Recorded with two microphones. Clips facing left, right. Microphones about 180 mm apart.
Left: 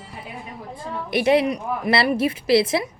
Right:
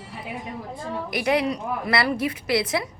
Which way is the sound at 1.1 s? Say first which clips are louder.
Left 5 dB; 25° left (ahead or behind).